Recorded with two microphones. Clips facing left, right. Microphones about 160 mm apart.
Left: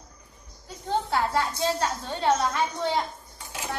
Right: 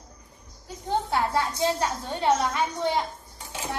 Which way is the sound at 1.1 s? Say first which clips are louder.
Even; 15° right (ahead or behind).